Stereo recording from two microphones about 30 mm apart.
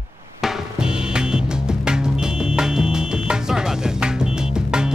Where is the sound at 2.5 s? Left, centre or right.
Centre.